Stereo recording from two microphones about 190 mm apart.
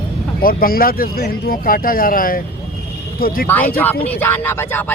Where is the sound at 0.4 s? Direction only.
50° left (ahead or behind).